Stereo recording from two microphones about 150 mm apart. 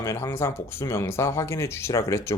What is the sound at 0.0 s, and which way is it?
Speech, 20° left (ahead or behind).